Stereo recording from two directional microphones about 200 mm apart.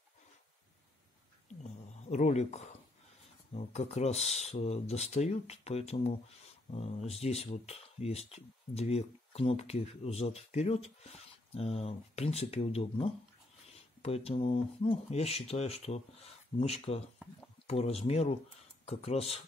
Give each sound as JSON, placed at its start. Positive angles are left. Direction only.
{"t": 1.6, "sound": "speech", "side_deg": 35}